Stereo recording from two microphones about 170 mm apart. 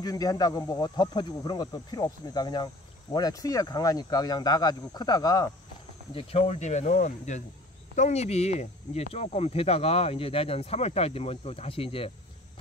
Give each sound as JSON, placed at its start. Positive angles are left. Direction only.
{"t": 0.0, "sound": "speech", "side_deg": 20}
{"t": 6.1, "sound": "speech", "side_deg": 40}